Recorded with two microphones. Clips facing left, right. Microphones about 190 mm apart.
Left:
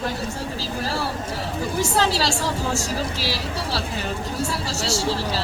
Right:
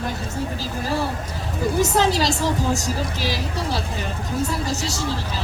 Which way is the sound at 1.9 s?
20° right (ahead or behind).